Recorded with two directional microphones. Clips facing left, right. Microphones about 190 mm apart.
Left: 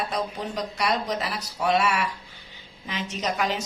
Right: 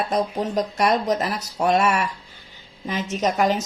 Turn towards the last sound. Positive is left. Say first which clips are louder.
# right 6 dB
turn(degrees=-45)  # may be behind; listen again after turning